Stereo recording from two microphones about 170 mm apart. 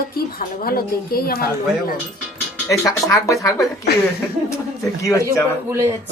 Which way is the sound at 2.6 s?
15° left (ahead or behind).